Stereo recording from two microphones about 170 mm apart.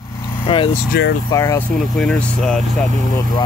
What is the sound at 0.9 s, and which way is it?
Speech, 70° left (ahead or behind).